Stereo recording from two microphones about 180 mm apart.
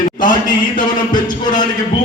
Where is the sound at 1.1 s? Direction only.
25° left (ahead or behind).